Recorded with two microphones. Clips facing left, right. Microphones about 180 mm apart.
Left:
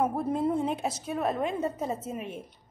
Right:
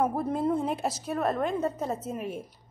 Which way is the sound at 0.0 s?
Centre (ahead or behind).